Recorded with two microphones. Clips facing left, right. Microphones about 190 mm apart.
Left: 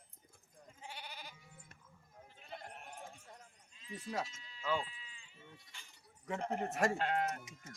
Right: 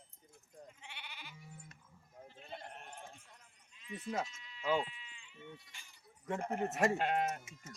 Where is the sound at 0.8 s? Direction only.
40° left (ahead or behind).